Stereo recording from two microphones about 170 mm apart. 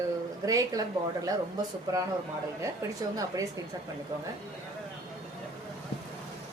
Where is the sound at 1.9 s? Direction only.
20° right (ahead or behind).